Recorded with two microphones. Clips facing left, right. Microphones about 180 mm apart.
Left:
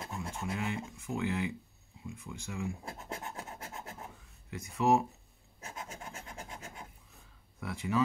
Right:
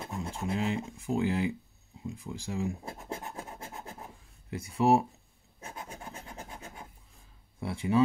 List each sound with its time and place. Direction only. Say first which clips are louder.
0.0 s speech: right 3 dB; 30° right (ahead or behind)
2.0 s scratch: right 5 dB; 35° right (ahead or behind)
4.5 s speech: right 3 dB; 30° right (ahead or behind)
5.6 s filing: right 1 dB; 30° right (ahead or behind)
7.6 s speech: right 5 dB; 30° right (ahead or behind)